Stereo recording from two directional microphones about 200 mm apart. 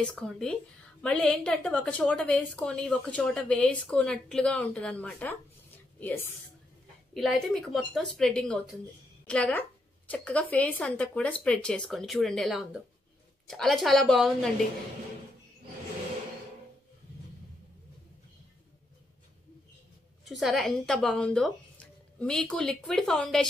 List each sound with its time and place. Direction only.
0.0 s a woman's voice: 5° left (ahead or behind)
7.4 s a woman's voice: centre (ahead or behind)
20.2 s a woman's voice: centre (ahead or behind)